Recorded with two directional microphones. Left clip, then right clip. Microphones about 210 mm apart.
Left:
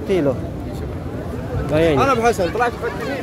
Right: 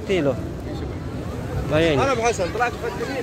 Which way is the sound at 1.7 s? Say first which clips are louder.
Left 3 dB; 10° left (ahead or behind).